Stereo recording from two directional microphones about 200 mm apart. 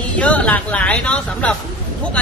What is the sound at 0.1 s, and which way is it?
A woman's voice, 5° left (ahead or behind).